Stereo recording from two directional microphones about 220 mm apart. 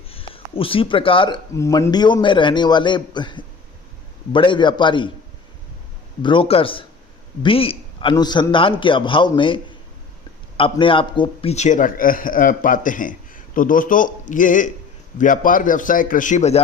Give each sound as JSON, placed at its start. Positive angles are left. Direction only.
{"t": 0.1, "sound": "speech", "side_deg": 25}
{"t": 6.2, "sound": "a man's voice", "side_deg": 25}